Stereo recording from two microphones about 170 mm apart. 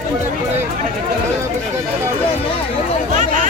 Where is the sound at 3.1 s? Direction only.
50° right (ahead or behind).